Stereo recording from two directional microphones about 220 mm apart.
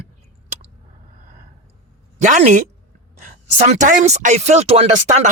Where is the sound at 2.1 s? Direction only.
30° right (ahead or behind).